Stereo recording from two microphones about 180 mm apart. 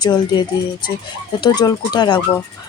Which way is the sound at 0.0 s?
25° left (ahead or behind).